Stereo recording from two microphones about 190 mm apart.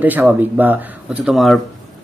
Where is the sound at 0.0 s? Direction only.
10° right (ahead or behind).